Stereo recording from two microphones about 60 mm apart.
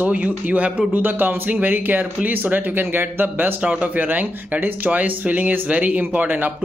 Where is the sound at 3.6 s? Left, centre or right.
Right.